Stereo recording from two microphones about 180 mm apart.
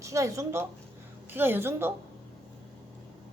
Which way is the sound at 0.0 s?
15° right (ahead or behind).